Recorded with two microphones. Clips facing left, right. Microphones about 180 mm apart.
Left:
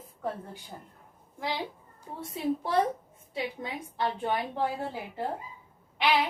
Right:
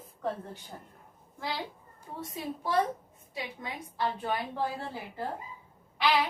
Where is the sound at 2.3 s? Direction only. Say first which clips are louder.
Left 3 dB; 25° left (ahead or behind).